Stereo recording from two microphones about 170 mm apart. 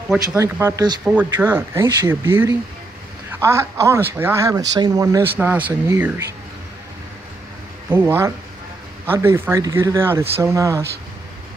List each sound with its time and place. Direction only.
0.4 s speech: 15° right (ahead or behind)
1.0 s speech: 10° right (ahead or behind)
7.9 s speech: 10° right (ahead or behind)